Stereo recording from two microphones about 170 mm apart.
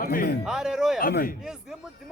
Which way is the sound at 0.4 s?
Centre (ahead or behind).